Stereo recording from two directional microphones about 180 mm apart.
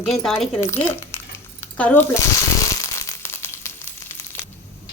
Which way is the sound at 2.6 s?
15° left (ahead or behind).